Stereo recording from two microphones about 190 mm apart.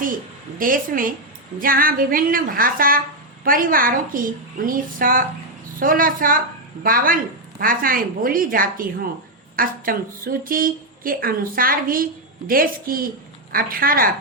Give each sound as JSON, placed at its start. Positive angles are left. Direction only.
{"t": 0.6, "sound": "speech", "side_deg": -45}